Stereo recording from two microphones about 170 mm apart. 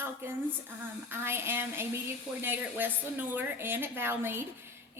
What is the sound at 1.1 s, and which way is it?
A woman's voice, 15° right (ahead or behind).